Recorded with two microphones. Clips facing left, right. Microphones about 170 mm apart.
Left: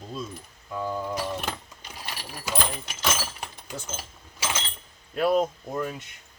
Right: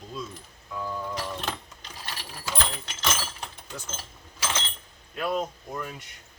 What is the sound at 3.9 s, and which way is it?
Coin, 10° left (ahead or behind).